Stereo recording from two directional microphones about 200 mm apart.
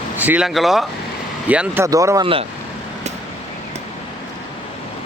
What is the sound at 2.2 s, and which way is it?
Speech, 25° right (ahead or behind).